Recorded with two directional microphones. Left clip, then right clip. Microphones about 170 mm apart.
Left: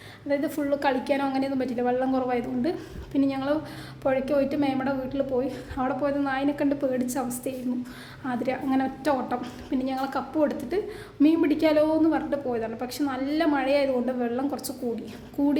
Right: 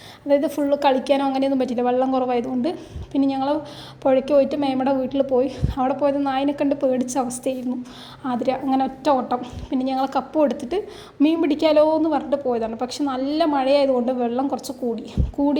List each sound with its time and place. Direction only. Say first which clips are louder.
0.3 s a woman's voice: right 7 dB; 30° right (ahead or behind)